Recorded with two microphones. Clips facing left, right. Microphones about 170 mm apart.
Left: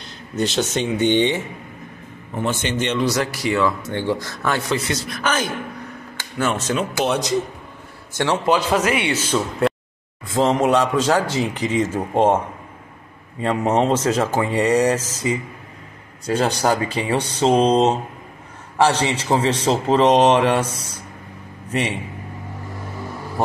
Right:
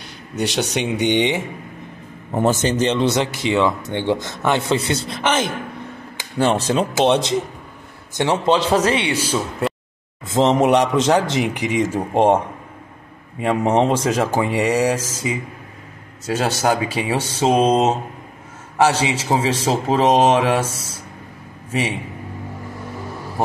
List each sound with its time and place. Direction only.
0.4 s a man's voice: 15° right (ahead or behind)
2.3 s speech: 40° right (ahead or behind)
8.1 s speech: 20° right (ahead or behind)
9.3 s speech: centre (ahead or behind)
10.2 s a man's voice: 20° right (ahead or behind)
13.4 s a man's voice: 15° right (ahead or behind)